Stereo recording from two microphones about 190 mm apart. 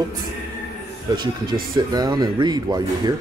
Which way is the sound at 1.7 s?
20° right (ahead or behind).